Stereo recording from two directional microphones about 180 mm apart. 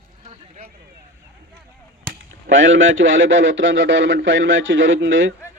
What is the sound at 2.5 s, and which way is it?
A man's voice, 90° right.